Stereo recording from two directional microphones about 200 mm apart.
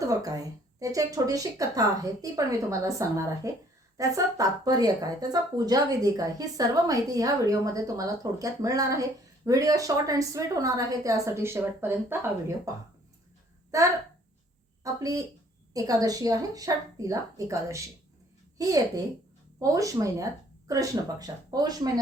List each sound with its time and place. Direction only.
0.0 s speech: 15° right (ahead or behind)
14.9 s speech: 15° right (ahead or behind)